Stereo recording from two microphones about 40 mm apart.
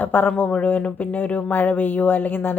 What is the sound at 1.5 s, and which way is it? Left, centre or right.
Speech, left.